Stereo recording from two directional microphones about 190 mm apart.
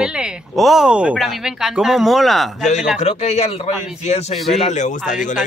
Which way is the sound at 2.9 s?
35° left (ahead or behind).